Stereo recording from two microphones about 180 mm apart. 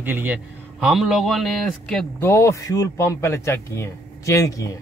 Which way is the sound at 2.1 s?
15° left (ahead or behind).